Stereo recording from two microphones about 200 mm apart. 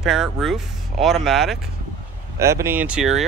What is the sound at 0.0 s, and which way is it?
Speech, centre (ahead or behind).